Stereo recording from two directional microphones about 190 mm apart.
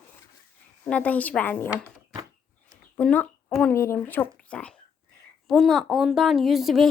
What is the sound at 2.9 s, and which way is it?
A woman's voice, 5° left (ahead or behind).